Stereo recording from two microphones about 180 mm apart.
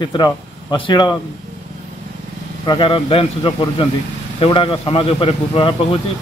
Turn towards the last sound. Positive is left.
turn(degrees=30)  # may be behind; listen again after turning